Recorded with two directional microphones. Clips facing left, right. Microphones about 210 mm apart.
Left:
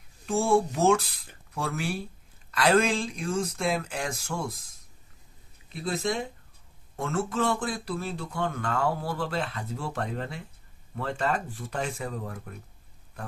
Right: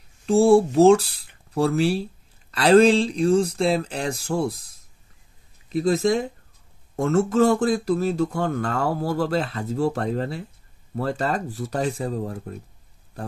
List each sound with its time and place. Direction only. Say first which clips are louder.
0.3 s speech: right 9 dB; 35° right (ahead or behind)